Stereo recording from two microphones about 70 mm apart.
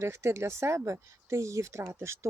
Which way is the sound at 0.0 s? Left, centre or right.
Right.